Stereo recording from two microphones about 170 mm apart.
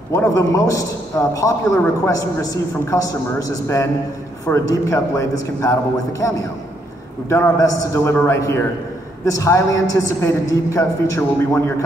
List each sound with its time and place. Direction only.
0.1 s a man's voice: 15° left (ahead or behind)